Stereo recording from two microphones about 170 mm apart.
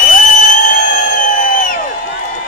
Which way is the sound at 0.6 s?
50° left (ahead or behind).